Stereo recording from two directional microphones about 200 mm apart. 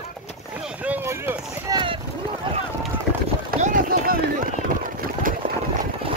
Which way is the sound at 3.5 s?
40° right (ahead or behind).